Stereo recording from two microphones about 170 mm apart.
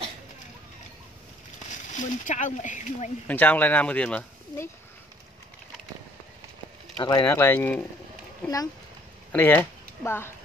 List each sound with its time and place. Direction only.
1.9 s speech: 45° left (ahead or behind)
3.3 s speech: 10° left (ahead or behind)
7.0 s speech: 25° left (ahead or behind)
7.2 s speech: 15° left (ahead or behind)